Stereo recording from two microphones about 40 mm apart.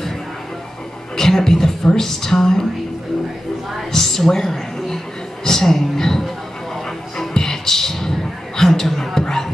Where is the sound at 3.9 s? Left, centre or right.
Centre.